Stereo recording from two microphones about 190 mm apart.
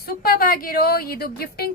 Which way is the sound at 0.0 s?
50° left (ahead or behind).